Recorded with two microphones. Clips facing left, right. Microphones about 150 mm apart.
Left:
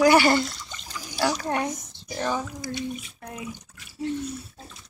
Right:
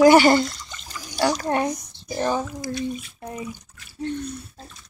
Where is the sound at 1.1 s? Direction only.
40° right (ahead or behind).